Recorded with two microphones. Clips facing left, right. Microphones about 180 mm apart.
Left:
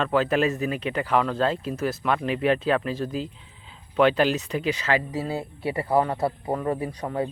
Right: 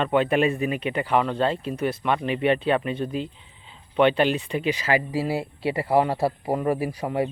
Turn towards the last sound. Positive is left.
turn(degrees=-10)  # may be behind; listen again after turning